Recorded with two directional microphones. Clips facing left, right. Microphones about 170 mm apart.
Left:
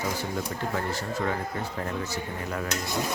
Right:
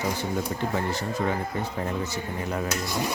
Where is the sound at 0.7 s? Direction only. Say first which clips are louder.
Right 1 dB; 20° right (ahead or behind).